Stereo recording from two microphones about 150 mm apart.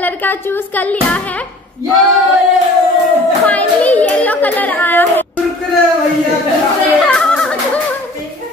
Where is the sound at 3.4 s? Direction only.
10° left (ahead or behind).